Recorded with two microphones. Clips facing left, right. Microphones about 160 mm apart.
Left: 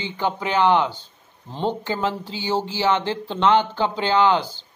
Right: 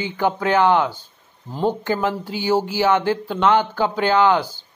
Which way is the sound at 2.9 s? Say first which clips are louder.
Right 4 dB; 20° left (ahead or behind).